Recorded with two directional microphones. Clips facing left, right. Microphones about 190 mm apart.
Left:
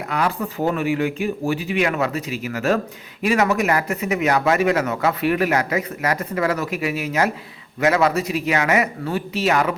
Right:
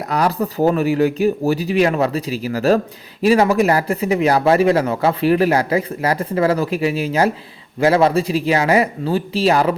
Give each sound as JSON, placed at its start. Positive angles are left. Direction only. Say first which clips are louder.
{"t": 0.1, "sound": "speech", "louder": "right 5 dB", "side_deg": -35}